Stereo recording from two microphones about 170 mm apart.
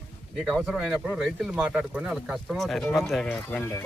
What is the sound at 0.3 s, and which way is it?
Speech, 5° right (ahead or behind).